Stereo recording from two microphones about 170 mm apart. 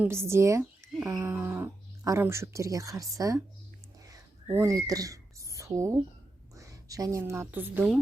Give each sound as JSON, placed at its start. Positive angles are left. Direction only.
{"t": 0.0, "sound": "speech", "side_deg": -15}
{"t": 4.1, "sound": "a sound", "side_deg": -20}
{"t": 6.6, "sound": "a woman's voice", "side_deg": -20}